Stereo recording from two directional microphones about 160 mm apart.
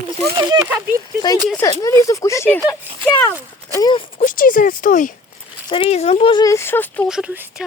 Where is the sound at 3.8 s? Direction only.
30° left (ahead or behind).